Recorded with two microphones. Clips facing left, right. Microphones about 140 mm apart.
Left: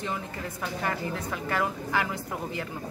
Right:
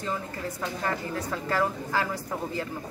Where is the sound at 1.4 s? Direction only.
10° left (ahead or behind).